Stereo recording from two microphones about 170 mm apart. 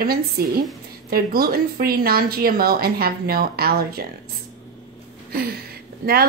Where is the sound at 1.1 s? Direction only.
60° right (ahead or behind).